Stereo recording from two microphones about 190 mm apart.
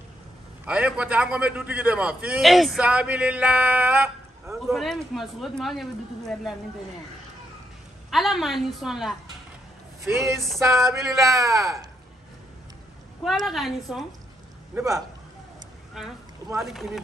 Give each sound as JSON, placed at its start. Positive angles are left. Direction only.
{"t": 0.7, "sound": "a man's voice", "side_deg": -5}
{"t": 4.7, "sound": "speech", "side_deg": 0}
{"t": 8.1, "sound": "speech", "side_deg": 0}
{"t": 10.2, "sound": "speech", "side_deg": 0}
{"t": 10.9, "sound": "a man's voice", "side_deg": -15}
{"t": 13.2, "sound": "speech", "side_deg": 0}
{"t": 16.5, "sound": "speech", "side_deg": 0}